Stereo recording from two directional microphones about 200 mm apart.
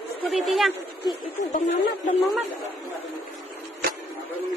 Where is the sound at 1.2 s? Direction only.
40° left (ahead or behind).